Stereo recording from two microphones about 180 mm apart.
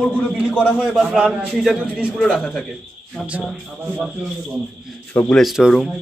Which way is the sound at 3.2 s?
5° right (ahead or behind).